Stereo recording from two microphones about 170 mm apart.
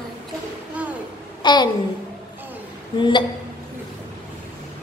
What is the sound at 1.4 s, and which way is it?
Speech, 25° left (ahead or behind).